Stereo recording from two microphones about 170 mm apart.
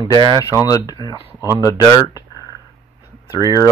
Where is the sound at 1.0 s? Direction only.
25° right (ahead or behind).